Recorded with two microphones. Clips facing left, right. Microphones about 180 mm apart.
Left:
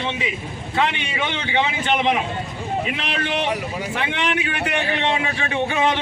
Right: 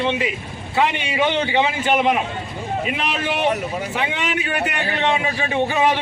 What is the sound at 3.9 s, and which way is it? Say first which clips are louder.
A man's voice: left 3 dB; 5° right (ahead or behind).